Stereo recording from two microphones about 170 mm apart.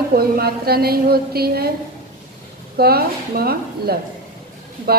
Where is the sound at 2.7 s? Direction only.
65° right (ahead or behind).